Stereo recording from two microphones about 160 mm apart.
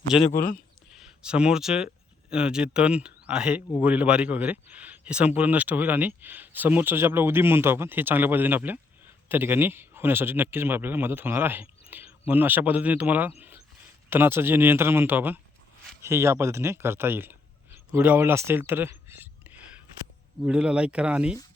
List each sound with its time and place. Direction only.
0.1 s a man's voice: 5° right (ahead or behind)
17.9 s a sound: 10° right (ahead or behind)
20.4 s a man's voice: 5° right (ahead or behind)